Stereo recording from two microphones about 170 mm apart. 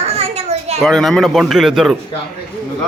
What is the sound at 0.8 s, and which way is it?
A man's voice, centre (ahead or behind).